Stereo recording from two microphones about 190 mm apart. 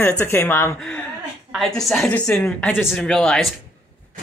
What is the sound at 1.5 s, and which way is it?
A woman's voice, centre (ahead or behind).